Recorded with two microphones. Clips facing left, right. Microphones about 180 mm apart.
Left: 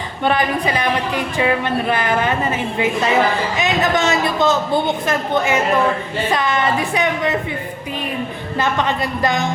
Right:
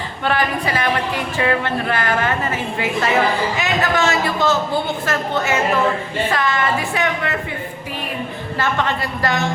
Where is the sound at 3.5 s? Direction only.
20° left (ahead or behind).